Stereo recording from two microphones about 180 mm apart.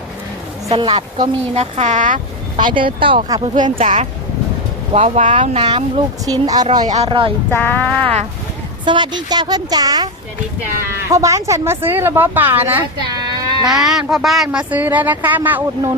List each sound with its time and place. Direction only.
0.7 s a woman's voice: 30° right (ahead or behind); by 2.2 s 45° right (ahead or behind)
2.7 s a woman's voice: 30° right (ahead or behind)
3.4 s a woman's voice: 40° right (ahead or behind); by 6.7 s 20° right (ahead or behind)
6.8 s a woman's voice: 35° right (ahead or behind)
7.5 s speech: 10° left (ahead or behind)
8.8 s a woman's voice: 25° right (ahead or behind)
13.1 s a sound: 20° right (ahead or behind)
13.7 s speech: centre (ahead or behind)